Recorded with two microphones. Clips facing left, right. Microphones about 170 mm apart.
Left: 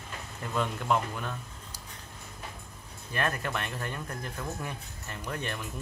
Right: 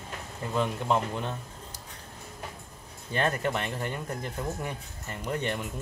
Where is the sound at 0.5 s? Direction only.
25° right (ahead or behind).